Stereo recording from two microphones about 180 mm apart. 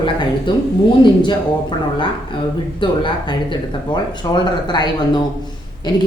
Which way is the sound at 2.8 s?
25° left (ahead or behind).